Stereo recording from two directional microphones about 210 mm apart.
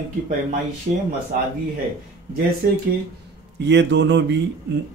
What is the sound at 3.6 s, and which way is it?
Speech, 55° right (ahead or behind).